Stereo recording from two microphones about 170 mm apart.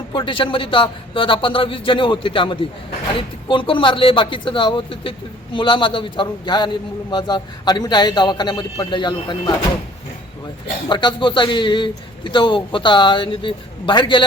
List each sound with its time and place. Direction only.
0.1 s a man's voice: 30° left (ahead or behind)
10.8 s a man's voice: 25° left (ahead or behind)